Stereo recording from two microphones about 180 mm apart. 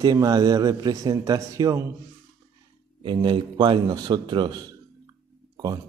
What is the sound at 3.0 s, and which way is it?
Speech, 25° right (ahead or behind).